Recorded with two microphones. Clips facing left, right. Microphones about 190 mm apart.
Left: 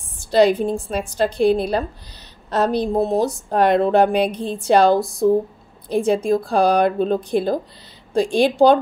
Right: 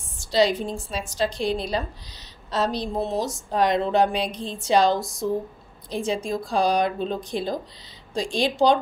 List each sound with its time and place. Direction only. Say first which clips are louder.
0.3 s speech: left 6 dB; 55° left (ahead or behind)
2.9 s speech: left 7 dB; 55° left (ahead or behind)